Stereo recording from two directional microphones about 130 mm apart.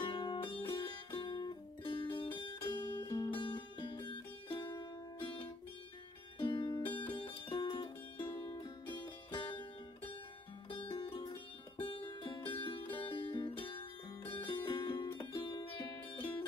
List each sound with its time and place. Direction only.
0.0 s music: 35° left (ahead or behind)
6.3 s music: 40° left (ahead or behind)
8.2 s music: 25° left (ahead or behind)